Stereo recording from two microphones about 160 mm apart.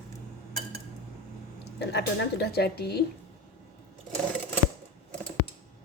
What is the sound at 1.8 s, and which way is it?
A woman's voice, 90° left.